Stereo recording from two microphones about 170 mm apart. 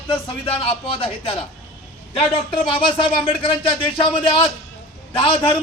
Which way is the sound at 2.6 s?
30° left (ahead or behind).